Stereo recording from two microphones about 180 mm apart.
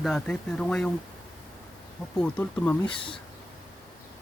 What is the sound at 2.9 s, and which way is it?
Speech, 30° left (ahead or behind).